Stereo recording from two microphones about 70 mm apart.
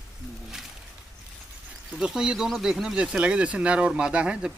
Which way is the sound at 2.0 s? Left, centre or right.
Centre.